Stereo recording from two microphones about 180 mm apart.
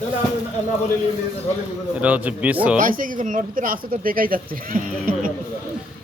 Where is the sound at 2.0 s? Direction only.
10° right (ahead or behind).